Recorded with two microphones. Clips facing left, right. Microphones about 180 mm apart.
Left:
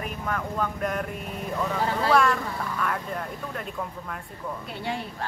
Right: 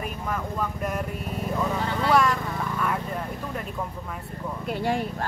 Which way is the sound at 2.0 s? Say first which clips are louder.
Even; 10° right (ahead or behind).